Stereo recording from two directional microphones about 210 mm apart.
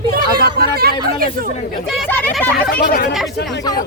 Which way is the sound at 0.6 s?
45° right (ahead or behind).